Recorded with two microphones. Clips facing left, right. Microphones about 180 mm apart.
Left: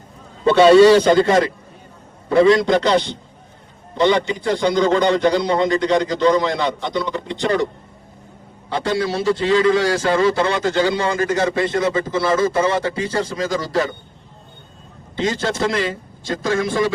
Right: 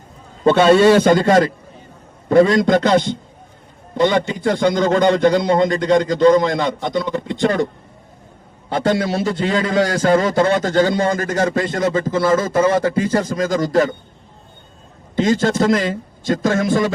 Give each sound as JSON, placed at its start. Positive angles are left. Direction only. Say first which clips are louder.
{"t": 0.4, "sound": "a man's voice", "louder": "left 2 dB", "side_deg": -50}
{"t": 8.7, "sound": "a man's voice", "louder": "right 3 dB", "side_deg": -45}
{"t": 15.1, "sound": "a man's voice", "louder": "right 5 dB", "side_deg": -45}